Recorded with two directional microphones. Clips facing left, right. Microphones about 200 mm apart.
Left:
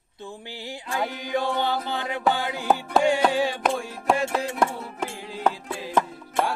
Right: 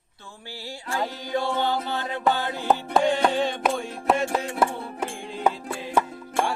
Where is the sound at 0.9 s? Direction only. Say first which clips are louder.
Even; 15° left (ahead or behind).